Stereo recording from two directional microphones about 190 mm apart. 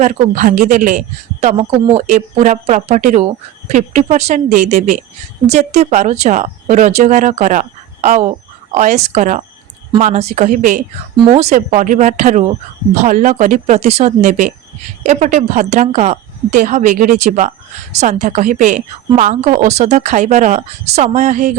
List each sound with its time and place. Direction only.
0.0 s a woman's voice: 40° right (ahead or behind)